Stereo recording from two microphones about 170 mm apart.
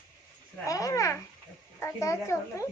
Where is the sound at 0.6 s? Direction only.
20° left (ahead or behind).